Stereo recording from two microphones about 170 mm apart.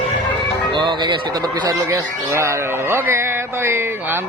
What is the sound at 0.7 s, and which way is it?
A man's voice, 25° right (ahead or behind).